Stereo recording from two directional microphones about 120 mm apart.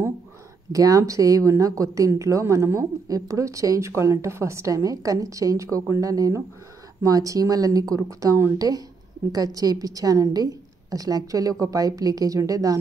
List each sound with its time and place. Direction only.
0.7 s a woman's voice: 30° right (ahead or behind)